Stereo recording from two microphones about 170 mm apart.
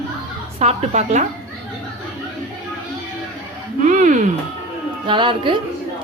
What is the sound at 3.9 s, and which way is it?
Speech, 50° right (ahead or behind).